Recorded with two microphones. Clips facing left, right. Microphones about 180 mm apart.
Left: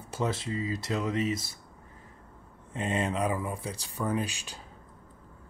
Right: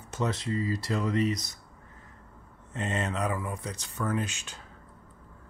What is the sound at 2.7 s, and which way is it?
Speech, 10° left (ahead or behind).